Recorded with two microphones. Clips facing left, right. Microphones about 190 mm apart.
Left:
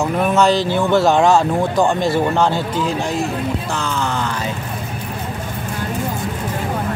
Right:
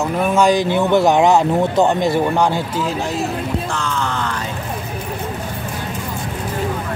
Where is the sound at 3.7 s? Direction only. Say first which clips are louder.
Left 1 dB; 5° left (ahead or behind).